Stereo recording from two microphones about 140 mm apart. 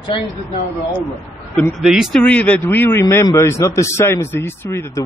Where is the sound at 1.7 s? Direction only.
Centre (ahead or behind).